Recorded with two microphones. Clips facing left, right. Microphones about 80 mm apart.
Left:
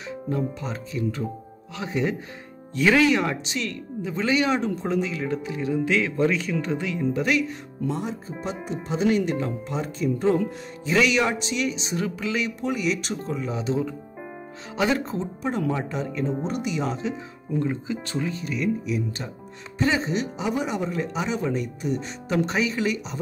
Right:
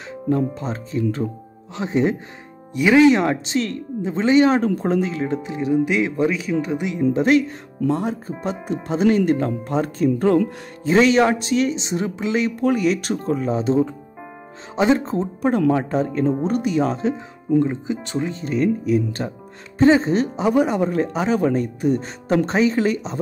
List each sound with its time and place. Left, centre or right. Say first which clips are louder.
0.3 s speech: right 7 dB; right
2.7 s speech: right 4 dB; centre
3.0 s speech: right 7 dB; right
4.6 s speech: right 6 dB; right; by 7.0 s centre
7.2 s speech: right 8 dB; right
7.9 s speech: right 7 dB; right
10.8 s speech: right 6 dB; right
14.8 s speech: right 6 dB; right
15.1 s speech: right 7 dB; right
17.6 s speech: right 3 dB; right